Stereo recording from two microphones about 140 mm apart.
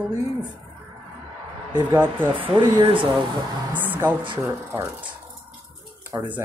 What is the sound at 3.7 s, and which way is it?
Speech, 15° right (ahead or behind).